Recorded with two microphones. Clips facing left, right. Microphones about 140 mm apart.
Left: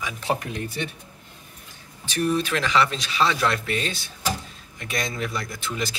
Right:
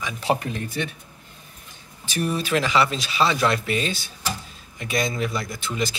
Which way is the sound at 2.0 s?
5° right (ahead or behind).